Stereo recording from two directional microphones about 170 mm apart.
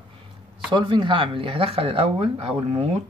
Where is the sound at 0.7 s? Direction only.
30° right (ahead or behind).